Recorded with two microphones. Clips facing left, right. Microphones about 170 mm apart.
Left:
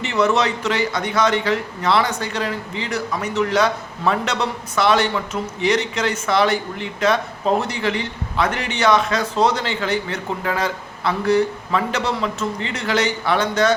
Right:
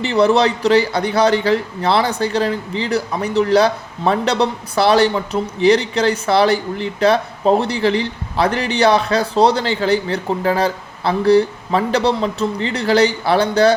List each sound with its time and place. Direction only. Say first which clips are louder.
0.0 s a man's voice: right 5 dB; 35° right (ahead or behind)